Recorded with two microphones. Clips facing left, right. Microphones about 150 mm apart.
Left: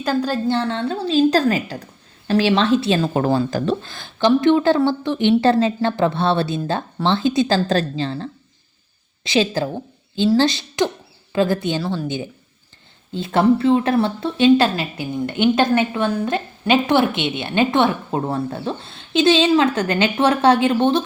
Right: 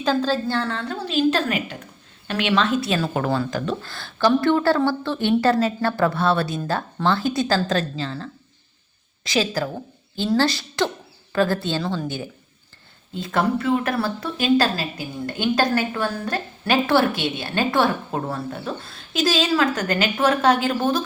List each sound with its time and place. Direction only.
0.0 s speech: 10° left (ahead or behind); by 3.8 s 30° left (ahead or behind)
3.8 s speech: 15° left (ahead or behind)
12.0 s speech: 20° left (ahead or behind)